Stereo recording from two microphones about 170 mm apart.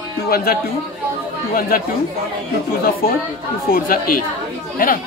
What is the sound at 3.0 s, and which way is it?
A woman's voice, 60° left (ahead or behind).